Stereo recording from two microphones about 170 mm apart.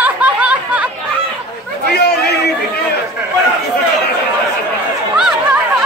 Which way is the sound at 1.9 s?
75° left (ahead or behind).